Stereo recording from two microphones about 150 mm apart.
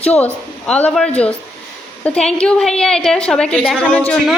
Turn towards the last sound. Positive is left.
turn(degrees=5)  # may be behind; listen again after turning